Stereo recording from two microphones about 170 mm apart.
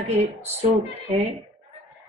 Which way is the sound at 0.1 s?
35° right (ahead or behind).